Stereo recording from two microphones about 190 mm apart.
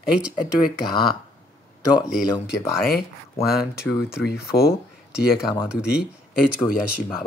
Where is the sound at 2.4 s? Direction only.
50° left (ahead or behind).